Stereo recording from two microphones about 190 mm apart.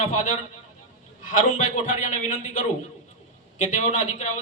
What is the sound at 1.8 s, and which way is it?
Speech, 45° left (ahead or behind).